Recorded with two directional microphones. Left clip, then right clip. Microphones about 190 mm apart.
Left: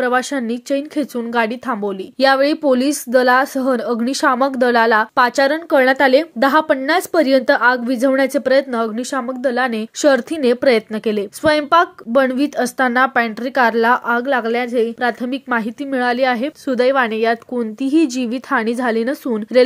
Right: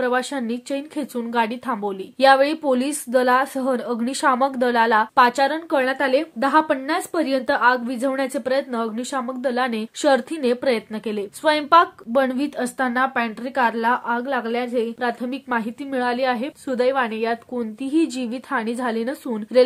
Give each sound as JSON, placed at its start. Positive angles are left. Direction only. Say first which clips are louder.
{"t": 0.0, "sound": "speech", "louder": "left 5 dB", "side_deg": 25}